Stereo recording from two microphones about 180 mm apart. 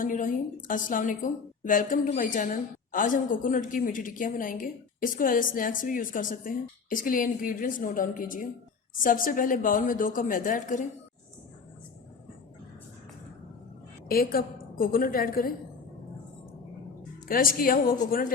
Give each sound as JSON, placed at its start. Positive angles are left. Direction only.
{"t": 0.0, "sound": "a woman's voice", "side_deg": 50}
{"t": 14.1, "sound": "a woman's voice", "side_deg": 55}
{"t": 17.2, "sound": "a woman's voice", "side_deg": 50}